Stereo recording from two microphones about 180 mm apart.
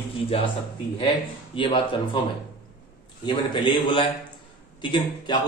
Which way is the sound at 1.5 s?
30° left (ahead or behind).